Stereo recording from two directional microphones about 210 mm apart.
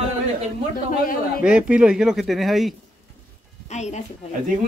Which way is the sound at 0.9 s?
40° left (ahead or behind).